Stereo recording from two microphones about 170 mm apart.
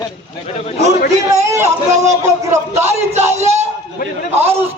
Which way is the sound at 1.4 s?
15° right (ahead or behind).